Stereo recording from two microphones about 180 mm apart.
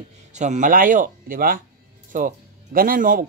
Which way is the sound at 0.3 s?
40° right (ahead or behind).